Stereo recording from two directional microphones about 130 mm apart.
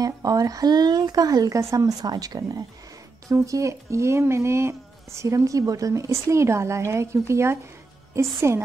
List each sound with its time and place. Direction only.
0.0 s speech: 30° right (ahead or behind)